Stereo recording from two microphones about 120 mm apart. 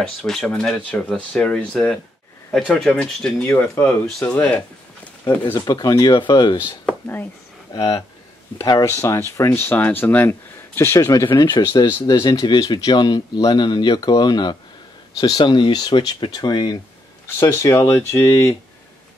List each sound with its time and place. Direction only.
0.0 s speech: 5° left (ahead or behind)
5.7 s speech: 35° left (ahead or behind)
7.7 s speech: 40° left (ahead or behind)
17.4 s speech: 25° left (ahead or behind)